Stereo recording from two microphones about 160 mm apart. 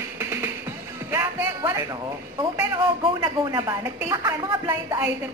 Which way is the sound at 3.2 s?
20° right (ahead or behind).